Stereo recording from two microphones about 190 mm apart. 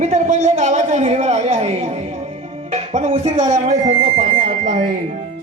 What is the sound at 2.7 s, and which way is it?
Music, 35° right (ahead or behind).